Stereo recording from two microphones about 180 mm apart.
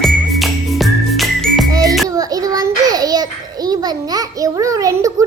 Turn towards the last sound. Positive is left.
turn(degrees=-20)  # may be behind; listen again after turning